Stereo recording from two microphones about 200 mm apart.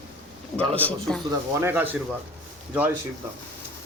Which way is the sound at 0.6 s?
5° left (ahead or behind).